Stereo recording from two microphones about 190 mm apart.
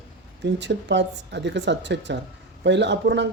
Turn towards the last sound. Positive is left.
turn(degrees=-65)  # may be behind; listen again after turning